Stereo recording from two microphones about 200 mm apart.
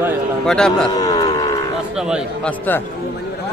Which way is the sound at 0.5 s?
5° left (ahead or behind).